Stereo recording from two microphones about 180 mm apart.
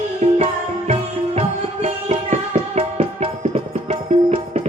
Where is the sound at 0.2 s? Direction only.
35° right (ahead or behind).